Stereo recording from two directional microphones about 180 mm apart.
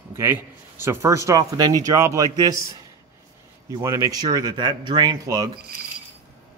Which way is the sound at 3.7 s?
15° right (ahead or behind).